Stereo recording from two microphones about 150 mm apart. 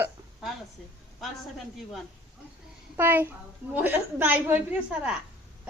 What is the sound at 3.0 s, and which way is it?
A woman's voice, 15° right (ahead or behind).